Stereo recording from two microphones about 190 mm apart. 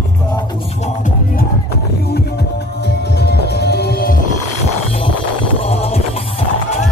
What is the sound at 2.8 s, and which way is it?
Music, 60° left (ahead or behind).